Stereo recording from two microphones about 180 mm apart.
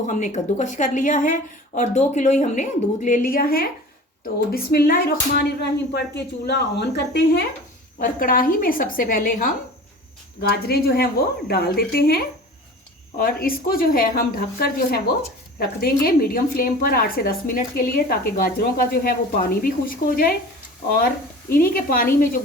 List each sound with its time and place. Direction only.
0.1 s a woman's voice: 40° left (ahead or behind); by 7.4 s 65° left (ahead or behind)
7.9 s a woman's voice: 50° left (ahead or behind)
21.5 s a woman's voice: 55° left (ahead or behind)